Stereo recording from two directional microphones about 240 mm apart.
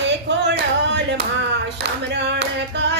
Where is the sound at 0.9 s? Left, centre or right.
Right.